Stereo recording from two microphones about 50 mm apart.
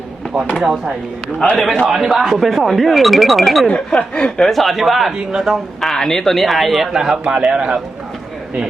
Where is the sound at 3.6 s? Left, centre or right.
Centre.